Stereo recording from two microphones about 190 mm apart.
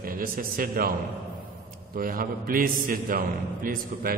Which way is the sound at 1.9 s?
50° right (ahead or behind).